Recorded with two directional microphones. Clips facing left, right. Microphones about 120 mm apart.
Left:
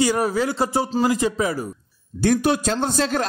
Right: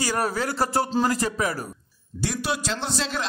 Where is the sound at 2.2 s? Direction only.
50° left (ahead or behind).